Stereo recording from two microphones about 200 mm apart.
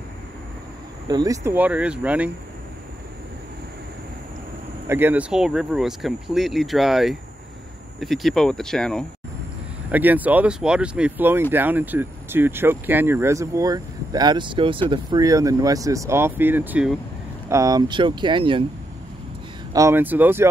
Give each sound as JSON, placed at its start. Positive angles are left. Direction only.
{"t": 1.0, "sound": "speech", "side_deg": -20}
{"t": 4.8, "sound": "speech", "side_deg": -10}
{"t": 9.8, "sound": "speech", "side_deg": -10}
{"t": 17.5, "sound": "speech", "side_deg": -15}
{"t": 19.7, "sound": "speech", "side_deg": -15}